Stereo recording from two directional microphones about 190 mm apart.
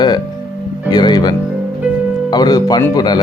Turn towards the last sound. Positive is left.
turn(degrees=20)  # may be behind; listen again after turning